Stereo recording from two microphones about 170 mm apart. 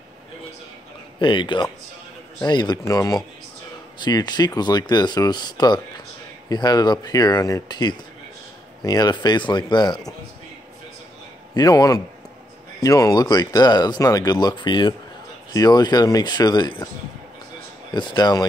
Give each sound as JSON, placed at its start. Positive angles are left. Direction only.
{"t": 1.2, "sound": "speech", "side_deg": 30}
{"t": 11.5, "sound": "speech", "side_deg": 20}
{"t": 17.9, "sound": "speech", "side_deg": 25}